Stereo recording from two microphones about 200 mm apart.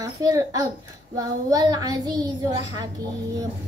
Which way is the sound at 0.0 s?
15° right (ahead or behind).